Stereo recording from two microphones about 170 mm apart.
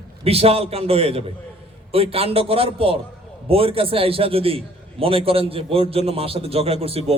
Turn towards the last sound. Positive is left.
turn(degrees=-35)  # may be behind; listen again after turning